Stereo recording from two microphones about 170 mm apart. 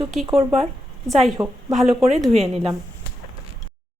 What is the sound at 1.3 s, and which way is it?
Speech, 20° right (ahead or behind).